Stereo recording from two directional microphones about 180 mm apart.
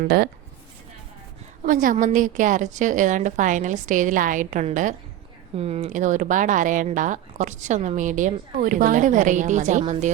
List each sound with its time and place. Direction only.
0.0 s speech: 55° right (ahead or behind)
1.6 s speech: 50° right (ahead or behind)